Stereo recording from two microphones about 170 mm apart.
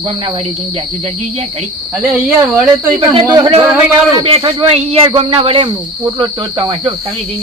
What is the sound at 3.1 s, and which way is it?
Speech, 30° right (ahead or behind).